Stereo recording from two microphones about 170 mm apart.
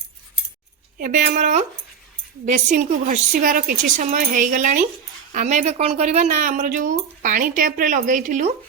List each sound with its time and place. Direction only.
0.9 s speech: 50° right (ahead or behind)